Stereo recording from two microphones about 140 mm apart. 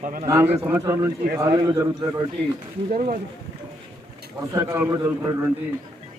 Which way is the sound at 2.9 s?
80° right.